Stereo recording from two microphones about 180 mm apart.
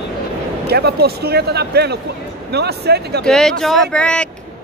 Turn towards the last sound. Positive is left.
turn(degrees=5)  # may be behind; listen again after turning